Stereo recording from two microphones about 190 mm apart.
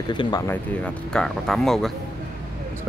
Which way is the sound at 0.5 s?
5° left (ahead or behind).